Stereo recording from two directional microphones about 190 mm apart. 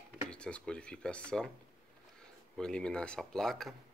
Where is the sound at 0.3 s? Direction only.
5° left (ahead or behind).